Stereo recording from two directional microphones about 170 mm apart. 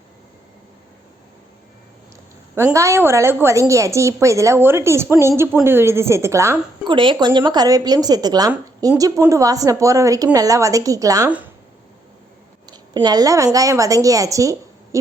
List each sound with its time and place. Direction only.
2.7 s a woman's voice: 15° right (ahead or behind)
6.8 s a woman's voice: 30° right (ahead or behind)
12.7 s a woman's voice: 25° right (ahead or behind)